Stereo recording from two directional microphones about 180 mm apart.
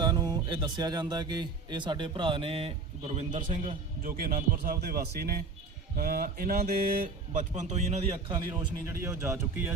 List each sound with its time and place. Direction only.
0.0 s speech: 20° right (ahead or behind); by 8.4 s 40° right (ahead or behind)
8.9 s speech: 15° right (ahead or behind)